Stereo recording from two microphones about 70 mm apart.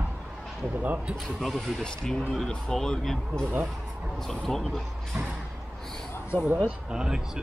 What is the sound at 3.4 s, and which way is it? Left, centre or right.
Speech, right.